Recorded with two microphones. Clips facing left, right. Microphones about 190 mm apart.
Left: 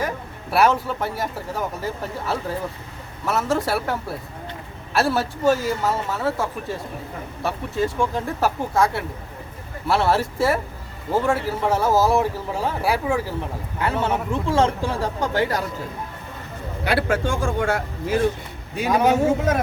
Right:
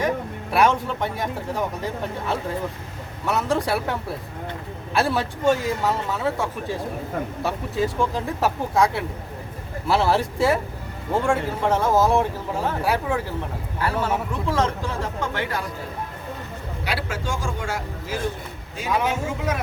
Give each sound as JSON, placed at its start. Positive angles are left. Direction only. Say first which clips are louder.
{"t": 0.5, "sound": "speech", "louder": "left 1 dB", "side_deg": 5}
{"t": 13.7, "sound": "a man's voice", "louder": "left 1 dB", "side_deg": 25}
{"t": 16.8, "sound": "a man's voice", "louder": "left 7 dB", "side_deg": 55}
{"t": 18.9, "sound": "speech", "louder": "left 6 dB", "side_deg": 40}